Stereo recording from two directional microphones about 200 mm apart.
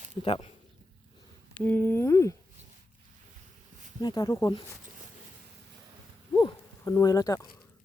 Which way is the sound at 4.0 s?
20° left (ahead or behind).